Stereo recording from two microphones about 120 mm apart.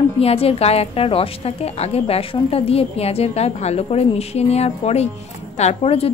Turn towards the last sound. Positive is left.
turn(degrees=55)  # may be behind; listen again after turning